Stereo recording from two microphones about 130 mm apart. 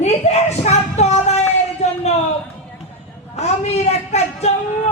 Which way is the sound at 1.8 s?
60° left (ahead or behind).